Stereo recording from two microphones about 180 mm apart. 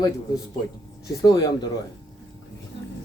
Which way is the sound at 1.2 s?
20° left (ahead or behind).